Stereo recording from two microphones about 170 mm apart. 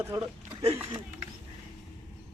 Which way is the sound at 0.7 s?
15° right (ahead or behind).